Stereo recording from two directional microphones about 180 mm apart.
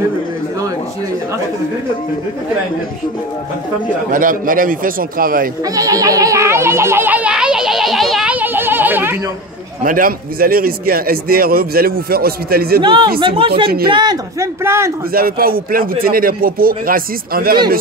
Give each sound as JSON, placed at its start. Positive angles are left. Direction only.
{"t": 4.1, "sound": "speech", "side_deg": -50}
{"t": 5.8, "sound": "speech", "side_deg": -20}
{"t": 9.8, "sound": "a man's voice", "side_deg": -50}
{"t": 12.8, "sound": "speech", "side_deg": -25}
{"t": 15.1, "sound": "speech", "side_deg": -55}